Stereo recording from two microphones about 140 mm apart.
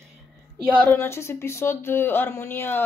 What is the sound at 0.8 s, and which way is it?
Speech, 15° left (ahead or behind).